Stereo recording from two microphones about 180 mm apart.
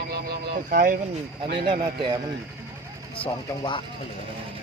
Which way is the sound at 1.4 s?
65° right (ahead or behind).